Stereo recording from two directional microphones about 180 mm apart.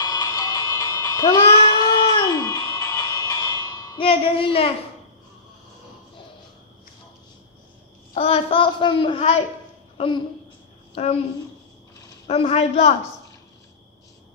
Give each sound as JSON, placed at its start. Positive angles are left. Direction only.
{"t": 0.0, "sound": "a sound", "side_deg": 20}
{"t": 8.1, "sound": "a child's voice", "side_deg": 35}
{"t": 12.3, "sound": "a child's voice", "side_deg": 35}